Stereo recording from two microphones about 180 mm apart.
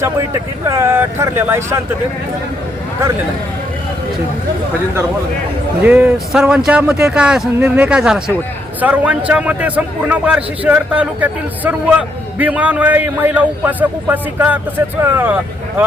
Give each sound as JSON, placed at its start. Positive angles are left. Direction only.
{"t": 0.7, "sound": "a man's voice", "side_deg": -15}
{"t": 5.8, "sound": "a man's voice", "side_deg": -10}